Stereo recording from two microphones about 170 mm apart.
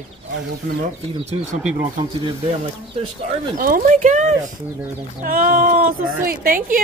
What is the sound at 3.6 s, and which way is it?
A woman's voice, 55° right (ahead or behind).